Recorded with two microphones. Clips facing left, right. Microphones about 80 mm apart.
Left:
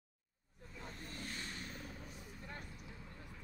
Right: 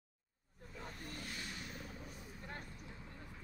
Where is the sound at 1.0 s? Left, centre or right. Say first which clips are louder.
Left 1 dB; left.